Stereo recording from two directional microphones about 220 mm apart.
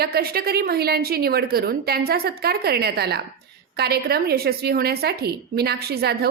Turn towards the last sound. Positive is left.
turn(degrees=-45)  # may be behind; listen again after turning